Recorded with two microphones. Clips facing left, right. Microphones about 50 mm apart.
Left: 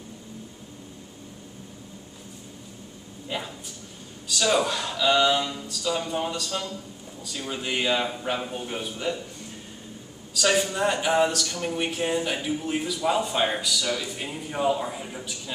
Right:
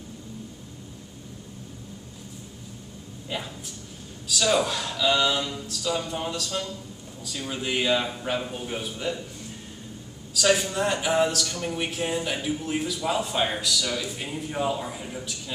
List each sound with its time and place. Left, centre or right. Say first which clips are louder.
3.3 s a sound: left 1 dB; centre
4.3 s speech: even; centre
10.3 s speech: right 1 dB; centre